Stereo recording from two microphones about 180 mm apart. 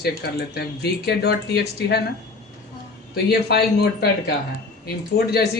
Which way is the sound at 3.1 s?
60° left (ahead or behind).